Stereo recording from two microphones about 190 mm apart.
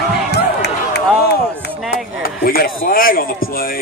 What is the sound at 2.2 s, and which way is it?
Speech, 50° left (ahead or behind).